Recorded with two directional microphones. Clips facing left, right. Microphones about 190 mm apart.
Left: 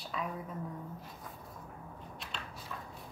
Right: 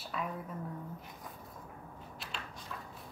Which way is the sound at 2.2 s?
Centre (ahead or behind).